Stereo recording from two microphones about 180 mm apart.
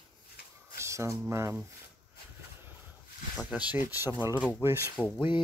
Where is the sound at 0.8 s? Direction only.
15° right (ahead or behind).